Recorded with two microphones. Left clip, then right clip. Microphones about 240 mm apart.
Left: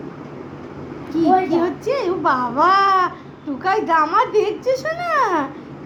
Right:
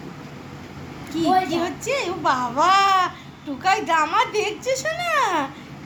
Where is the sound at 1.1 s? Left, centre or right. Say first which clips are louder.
Left 4 dB; right.